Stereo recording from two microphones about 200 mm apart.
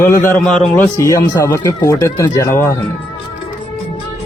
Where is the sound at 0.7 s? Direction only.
15° left (ahead or behind).